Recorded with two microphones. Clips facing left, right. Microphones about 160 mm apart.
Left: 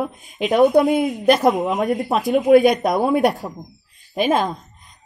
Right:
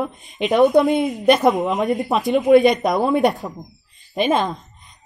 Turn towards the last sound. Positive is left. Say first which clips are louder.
# even
turn(degrees=0)  # may be behind; listen again after turning